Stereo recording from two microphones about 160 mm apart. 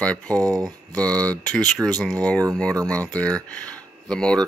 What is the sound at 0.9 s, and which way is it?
Speech, 10° left (ahead or behind).